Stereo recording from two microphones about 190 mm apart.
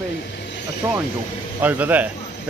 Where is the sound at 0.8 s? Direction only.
15° right (ahead or behind).